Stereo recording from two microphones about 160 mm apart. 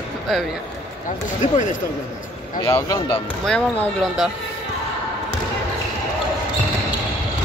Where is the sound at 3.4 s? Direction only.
5° left (ahead or behind).